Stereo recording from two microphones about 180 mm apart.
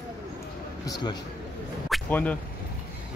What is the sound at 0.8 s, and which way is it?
Speech, 20° left (ahead or behind).